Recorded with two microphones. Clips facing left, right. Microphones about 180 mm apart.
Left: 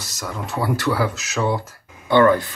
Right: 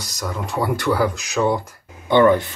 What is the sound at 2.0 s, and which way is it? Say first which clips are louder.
Speech: right 1 dB; 20° right (ahead or behind).